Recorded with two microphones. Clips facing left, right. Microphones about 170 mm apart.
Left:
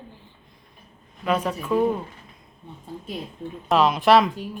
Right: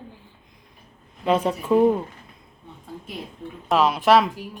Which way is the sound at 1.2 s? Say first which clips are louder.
Right 3 dB; 25° right (ahead or behind).